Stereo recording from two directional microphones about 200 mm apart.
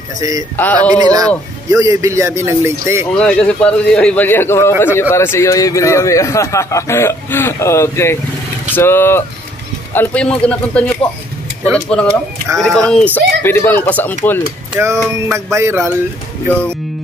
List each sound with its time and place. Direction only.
0.2 s a man's voice: 15° right (ahead or behind)
0.6 s speech: 10° left (ahead or behind)
0.9 s a man's voice: 20° right (ahead or behind)
3.1 s a man's voice: 5° left (ahead or behind)
14.7 s a man's voice: 10° right (ahead or behind)